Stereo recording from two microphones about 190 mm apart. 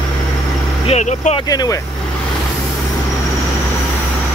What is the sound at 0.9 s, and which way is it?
Speech, 35° left (ahead or behind).